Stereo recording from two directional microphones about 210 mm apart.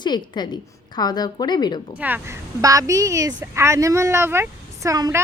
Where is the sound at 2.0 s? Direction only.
10° right (ahead or behind).